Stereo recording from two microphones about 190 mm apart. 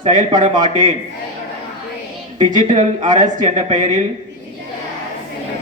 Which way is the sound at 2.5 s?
40° right (ahead or behind).